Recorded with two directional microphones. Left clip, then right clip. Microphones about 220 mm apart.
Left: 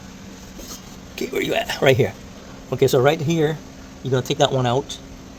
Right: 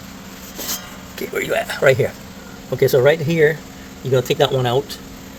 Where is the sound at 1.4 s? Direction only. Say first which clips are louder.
Right 3 dB; 50° left (ahead or behind).